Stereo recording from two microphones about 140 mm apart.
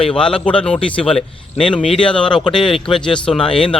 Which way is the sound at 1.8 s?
40° left (ahead or behind).